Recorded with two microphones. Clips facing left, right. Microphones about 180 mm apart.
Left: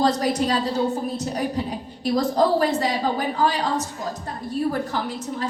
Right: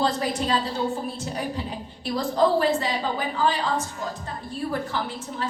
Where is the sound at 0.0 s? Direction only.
40° left (ahead or behind).